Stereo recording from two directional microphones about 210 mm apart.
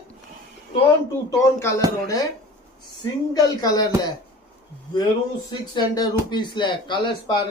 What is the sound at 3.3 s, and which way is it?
Speech, 20° left (ahead or behind).